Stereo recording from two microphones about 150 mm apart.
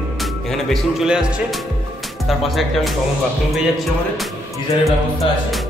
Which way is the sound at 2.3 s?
Centre (ahead or behind).